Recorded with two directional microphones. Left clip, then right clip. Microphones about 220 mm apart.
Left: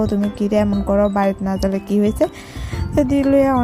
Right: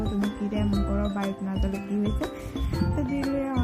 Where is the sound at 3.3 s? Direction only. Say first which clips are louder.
Left 14 dB; 50° left (ahead or behind).